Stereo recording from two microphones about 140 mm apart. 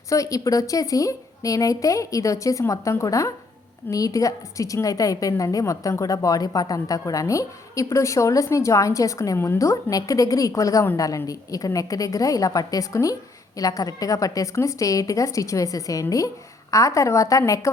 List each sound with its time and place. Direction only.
0.1 s a woman's voice: 25° left (ahead or behind)